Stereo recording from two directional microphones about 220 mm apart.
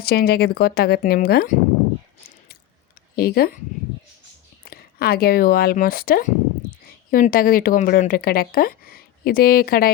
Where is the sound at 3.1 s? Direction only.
45° left (ahead or behind).